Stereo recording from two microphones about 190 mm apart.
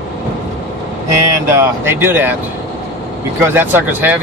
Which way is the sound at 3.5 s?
10° right (ahead or behind).